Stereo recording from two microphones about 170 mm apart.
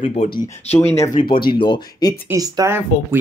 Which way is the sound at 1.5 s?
25° left (ahead or behind).